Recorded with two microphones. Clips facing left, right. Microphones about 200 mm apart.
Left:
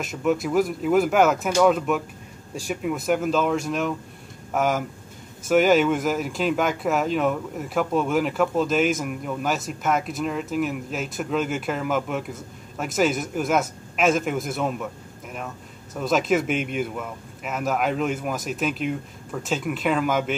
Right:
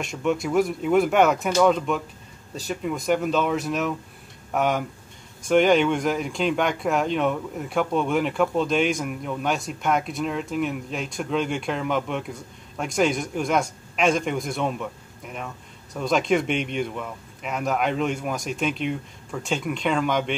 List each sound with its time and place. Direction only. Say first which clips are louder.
0.0 s speech: left 1 dB; centre (ahead or behind)